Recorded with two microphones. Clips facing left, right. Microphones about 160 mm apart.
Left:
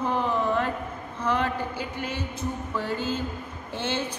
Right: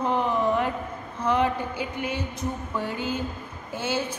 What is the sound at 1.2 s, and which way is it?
A woman's voice, 15° right (ahead or behind).